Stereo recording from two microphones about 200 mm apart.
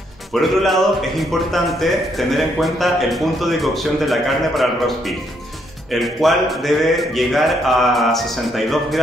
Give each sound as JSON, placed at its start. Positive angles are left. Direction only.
{"t": 0.3, "sound": "a man's voice", "side_deg": 0}